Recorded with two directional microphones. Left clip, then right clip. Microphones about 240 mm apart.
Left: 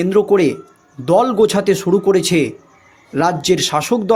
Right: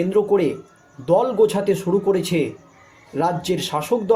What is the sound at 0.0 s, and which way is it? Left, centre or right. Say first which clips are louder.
A man's voice: left 5 dB; left.